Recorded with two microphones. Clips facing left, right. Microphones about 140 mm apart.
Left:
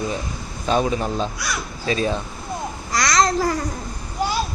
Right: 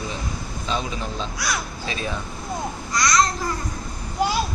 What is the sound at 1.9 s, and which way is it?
Speech, 35° left (ahead or behind).